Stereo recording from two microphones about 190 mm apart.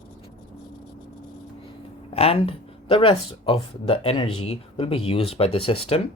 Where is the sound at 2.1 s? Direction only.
30° left (ahead or behind).